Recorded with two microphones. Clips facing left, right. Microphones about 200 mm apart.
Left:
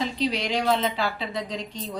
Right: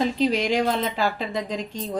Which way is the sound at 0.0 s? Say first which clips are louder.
Right 5 dB; 50° right (ahead or behind).